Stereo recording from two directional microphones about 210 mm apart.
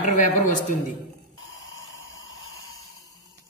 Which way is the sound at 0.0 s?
35° left (ahead or behind).